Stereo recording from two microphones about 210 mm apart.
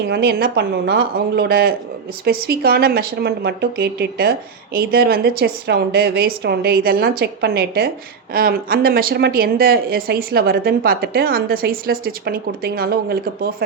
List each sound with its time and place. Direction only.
0.0 s a woman's voice: 50° right (ahead or behind)